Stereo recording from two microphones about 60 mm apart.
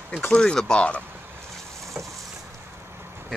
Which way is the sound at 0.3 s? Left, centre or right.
Centre.